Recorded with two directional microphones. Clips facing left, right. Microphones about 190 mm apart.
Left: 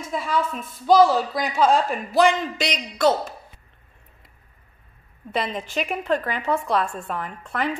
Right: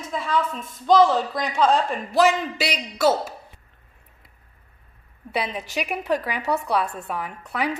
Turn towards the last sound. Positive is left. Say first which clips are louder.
# even
turn(degrees=-10)  # may be behind; listen again after turning